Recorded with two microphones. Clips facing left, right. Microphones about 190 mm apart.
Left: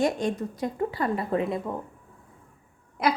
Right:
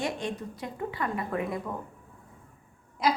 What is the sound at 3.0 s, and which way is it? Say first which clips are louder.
Speech: left 2 dB; 60° left (ahead or behind).